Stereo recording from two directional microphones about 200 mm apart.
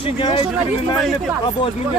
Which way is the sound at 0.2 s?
25° left (ahead or behind).